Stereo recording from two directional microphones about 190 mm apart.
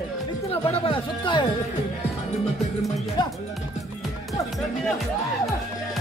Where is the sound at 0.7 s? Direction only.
25° left (ahead or behind).